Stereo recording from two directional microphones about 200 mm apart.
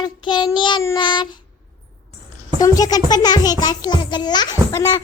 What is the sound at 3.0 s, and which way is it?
Child singing, 20° left (ahead or behind).